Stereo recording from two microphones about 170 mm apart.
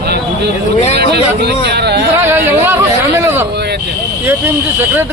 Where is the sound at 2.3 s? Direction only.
15° right (ahead or behind).